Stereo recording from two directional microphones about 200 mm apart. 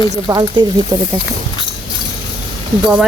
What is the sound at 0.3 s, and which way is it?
Speech, 20° right (ahead or behind).